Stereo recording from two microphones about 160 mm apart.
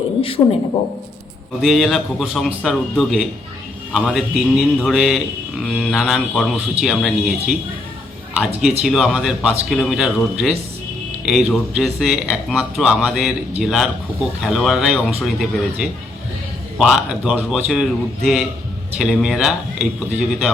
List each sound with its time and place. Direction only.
0.2 s a man's voice: 35° left (ahead or behind)
1.6 s speech: centre (ahead or behind)
8.8 s speech: centre (ahead or behind)